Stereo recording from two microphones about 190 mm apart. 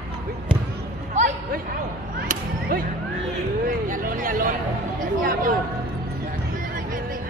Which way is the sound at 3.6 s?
45° right (ahead or behind).